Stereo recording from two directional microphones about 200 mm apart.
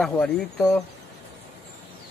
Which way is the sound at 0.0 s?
5° left (ahead or behind).